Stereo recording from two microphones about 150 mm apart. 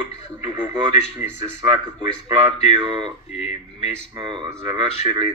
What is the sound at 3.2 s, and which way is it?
Speech, 45° left (ahead or behind).